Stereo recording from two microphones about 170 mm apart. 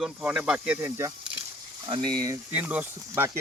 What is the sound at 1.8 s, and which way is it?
Speech, 25° right (ahead or behind).